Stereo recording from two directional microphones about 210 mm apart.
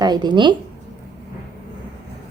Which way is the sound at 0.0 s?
20° right (ahead or behind).